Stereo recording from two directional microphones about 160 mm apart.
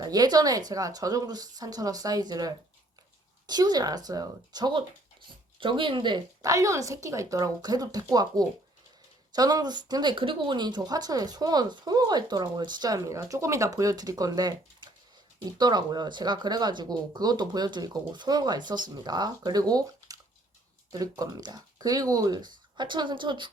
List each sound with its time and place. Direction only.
0.0 s speech: 25° right (ahead or behind)